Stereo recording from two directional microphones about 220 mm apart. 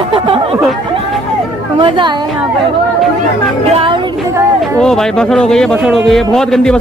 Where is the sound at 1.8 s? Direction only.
20° right (ahead or behind).